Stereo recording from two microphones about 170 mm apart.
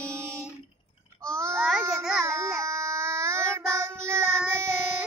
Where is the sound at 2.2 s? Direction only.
15° right (ahead or behind).